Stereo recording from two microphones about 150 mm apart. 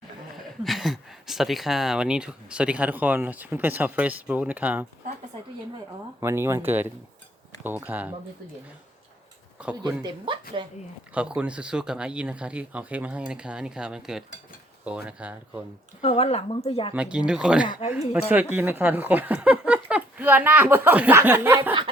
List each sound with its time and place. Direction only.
0.4 s speech: centre (ahead or behind)
6.1 s speech: 15° right (ahead or behind)
9.8 s speech: 30° right (ahead or behind)
11.3 s speech: 10° right (ahead or behind)
16.0 s speech: 40° left (ahead or behind)
16.9 s speech: 5° right (ahead or behind)